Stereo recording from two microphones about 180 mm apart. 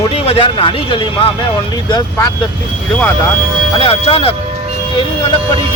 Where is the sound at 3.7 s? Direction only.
30° left (ahead or behind).